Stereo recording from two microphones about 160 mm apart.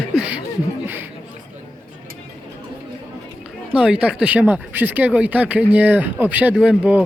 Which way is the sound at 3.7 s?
5° right (ahead or behind).